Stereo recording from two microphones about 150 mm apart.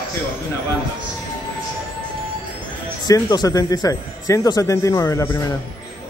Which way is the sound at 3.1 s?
25° left (ahead or behind).